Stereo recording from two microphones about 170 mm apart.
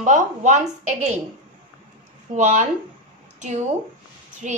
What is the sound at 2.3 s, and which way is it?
Speech, 45° right (ahead or behind).